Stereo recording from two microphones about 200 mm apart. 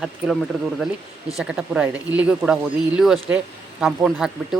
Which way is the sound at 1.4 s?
5° right (ahead or behind).